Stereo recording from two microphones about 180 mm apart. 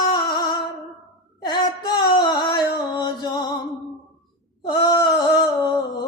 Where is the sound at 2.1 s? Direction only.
25° left (ahead or behind).